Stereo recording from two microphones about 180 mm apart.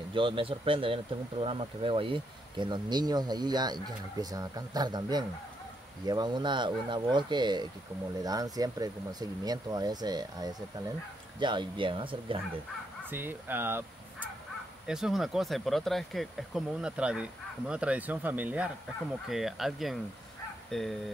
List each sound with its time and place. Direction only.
0.1 s speech: 30° right (ahead or behind)
13.1 s speech: 10° right (ahead or behind)